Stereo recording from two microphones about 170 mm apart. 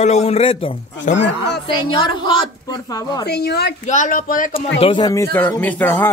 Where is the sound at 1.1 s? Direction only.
90° left.